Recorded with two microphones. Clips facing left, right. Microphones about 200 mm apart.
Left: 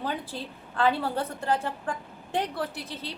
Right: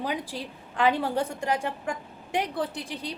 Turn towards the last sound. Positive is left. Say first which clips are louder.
# right 2 dB
turn(degrees=-15)  # may be behind; listen again after turning